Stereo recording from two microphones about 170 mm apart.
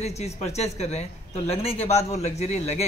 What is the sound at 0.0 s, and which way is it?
A man's voice, 40° left (ahead or behind).